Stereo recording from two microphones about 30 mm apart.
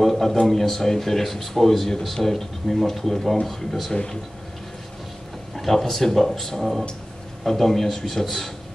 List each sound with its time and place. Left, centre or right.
0.0 s speech: centre
3.9 s speech: left
5.6 s speech: centre